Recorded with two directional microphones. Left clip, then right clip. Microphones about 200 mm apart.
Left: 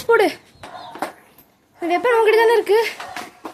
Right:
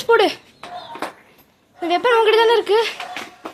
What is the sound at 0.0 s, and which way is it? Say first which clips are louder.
Speech: right 1 dB; 10° left (ahead or behind).